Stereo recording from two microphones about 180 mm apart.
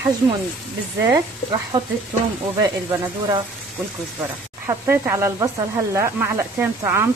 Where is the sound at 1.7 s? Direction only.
20° right (ahead or behind).